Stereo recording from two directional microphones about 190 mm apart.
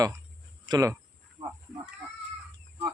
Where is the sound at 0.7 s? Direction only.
20° right (ahead or behind).